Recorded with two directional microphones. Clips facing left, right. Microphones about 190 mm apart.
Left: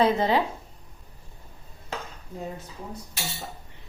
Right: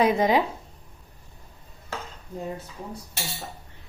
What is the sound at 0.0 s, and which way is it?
Speech, 15° right (ahead or behind).